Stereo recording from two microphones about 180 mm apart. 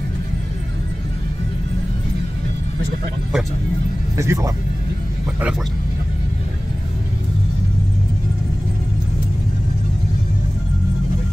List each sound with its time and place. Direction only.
4.2 s speech: 15° right (ahead or behind)